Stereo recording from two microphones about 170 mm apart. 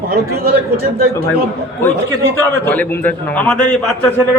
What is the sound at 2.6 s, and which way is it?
A man's voice, 10° left (ahead or behind).